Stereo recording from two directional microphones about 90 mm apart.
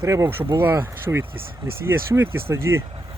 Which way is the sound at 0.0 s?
35° right (ahead or behind).